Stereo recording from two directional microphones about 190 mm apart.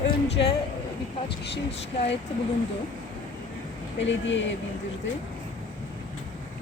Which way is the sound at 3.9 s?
75° left (ahead or behind).